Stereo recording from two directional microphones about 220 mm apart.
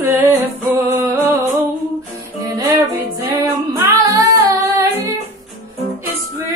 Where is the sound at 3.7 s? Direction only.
15° right (ahead or behind).